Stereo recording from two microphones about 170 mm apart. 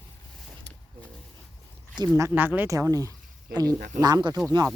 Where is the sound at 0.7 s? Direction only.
90° right.